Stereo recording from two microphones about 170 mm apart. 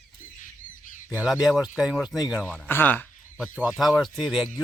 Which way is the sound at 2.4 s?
10° left (ahead or behind).